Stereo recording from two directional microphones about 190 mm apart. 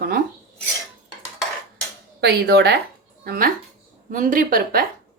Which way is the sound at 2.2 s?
60° right (ahead or behind).